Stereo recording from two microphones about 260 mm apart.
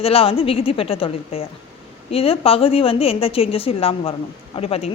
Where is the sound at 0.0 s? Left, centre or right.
Left.